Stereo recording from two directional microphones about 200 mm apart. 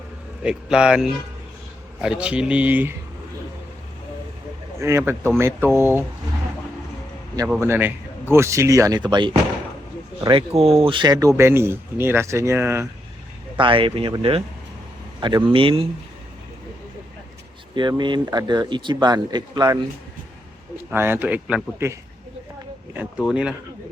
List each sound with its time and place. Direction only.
0.4 s speech: 5° right (ahead or behind)
4.8 s speech: 15° right (ahead or behind)
7.6 s speech: 10° right (ahead or behind)
13.6 s speech: 25° right (ahead or behind)
17.7 s speech: 20° right (ahead or behind)
20.9 s speech: 10° right (ahead or behind)
23.0 s speech: 5° right (ahead or behind)